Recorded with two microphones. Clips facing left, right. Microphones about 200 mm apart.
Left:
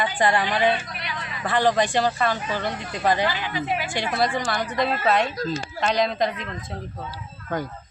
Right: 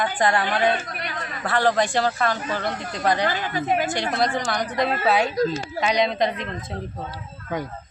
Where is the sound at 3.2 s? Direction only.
45° right (ahead or behind).